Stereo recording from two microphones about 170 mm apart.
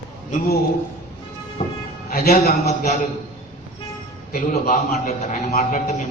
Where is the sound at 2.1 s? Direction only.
60° left (ahead or behind).